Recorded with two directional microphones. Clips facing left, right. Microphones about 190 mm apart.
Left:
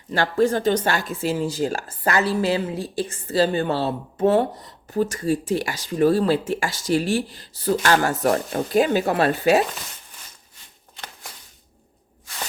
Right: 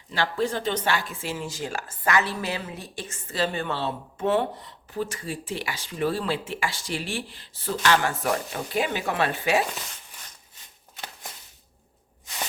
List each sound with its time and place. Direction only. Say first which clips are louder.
0.1 s speech: left 7 dB; 45° left (ahead or behind)